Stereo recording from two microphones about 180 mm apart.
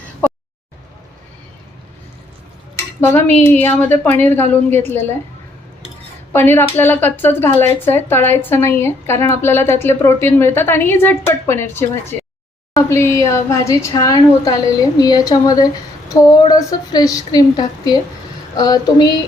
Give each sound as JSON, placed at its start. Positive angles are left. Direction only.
{"t": 3.1, "sound": "a woman's voice", "side_deg": 10}
{"t": 6.3, "sound": "a woman's voice", "side_deg": 10}